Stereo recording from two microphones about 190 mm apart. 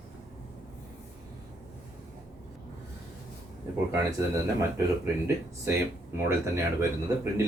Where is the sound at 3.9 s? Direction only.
15° right (ahead or behind).